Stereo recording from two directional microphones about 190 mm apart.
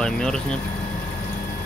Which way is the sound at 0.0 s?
5° left (ahead or behind).